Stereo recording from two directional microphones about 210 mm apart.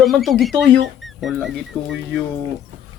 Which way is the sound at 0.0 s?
Centre (ahead or behind).